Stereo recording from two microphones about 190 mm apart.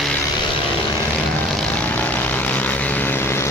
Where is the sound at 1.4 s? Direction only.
5° left (ahead or behind).